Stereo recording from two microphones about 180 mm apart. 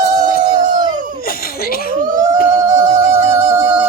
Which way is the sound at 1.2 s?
55° left (ahead or behind).